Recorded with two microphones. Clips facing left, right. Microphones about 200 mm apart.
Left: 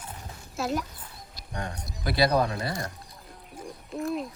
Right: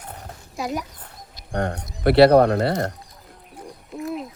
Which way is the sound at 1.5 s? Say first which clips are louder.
Right 10 dB; 65° right (ahead or behind).